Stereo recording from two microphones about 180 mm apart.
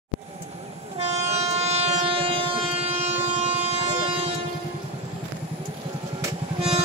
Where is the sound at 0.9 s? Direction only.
35° right (ahead or behind).